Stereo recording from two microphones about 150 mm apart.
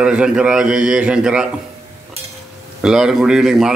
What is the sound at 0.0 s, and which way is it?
A man's voice, 5° right (ahead or behind).